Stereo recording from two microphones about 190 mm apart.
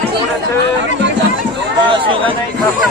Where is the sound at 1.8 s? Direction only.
25° right (ahead or behind).